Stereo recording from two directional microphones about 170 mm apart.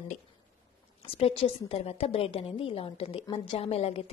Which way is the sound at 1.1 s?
35° left (ahead or behind).